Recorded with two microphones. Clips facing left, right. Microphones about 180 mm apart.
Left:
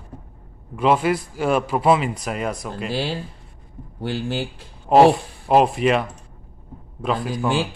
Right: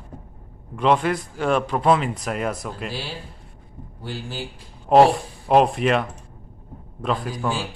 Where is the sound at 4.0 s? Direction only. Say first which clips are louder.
Left 7 dB; 70° left (ahead or behind).